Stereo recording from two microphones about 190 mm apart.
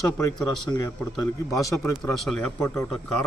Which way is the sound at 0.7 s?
20° left (ahead or behind).